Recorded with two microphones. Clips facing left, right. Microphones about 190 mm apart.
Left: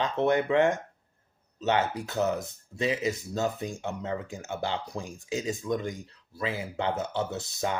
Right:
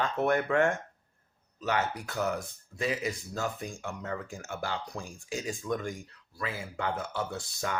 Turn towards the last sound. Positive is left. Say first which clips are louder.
# left 4 dB
turn(degrees=20)  # may be behind; listen again after turning